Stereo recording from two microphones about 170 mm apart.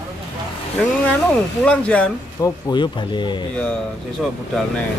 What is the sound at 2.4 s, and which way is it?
Speech, 25° left (ahead or behind).